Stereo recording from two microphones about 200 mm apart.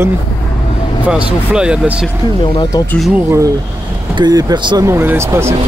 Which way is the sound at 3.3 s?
15° right (ahead or behind).